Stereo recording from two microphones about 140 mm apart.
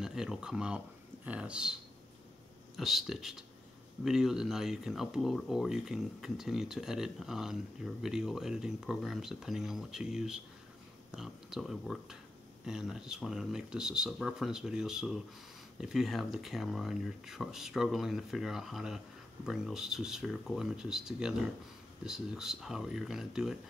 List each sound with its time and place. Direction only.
0.0 s speech: 5° right (ahead or behind)
2.8 s speech: centre (ahead or behind)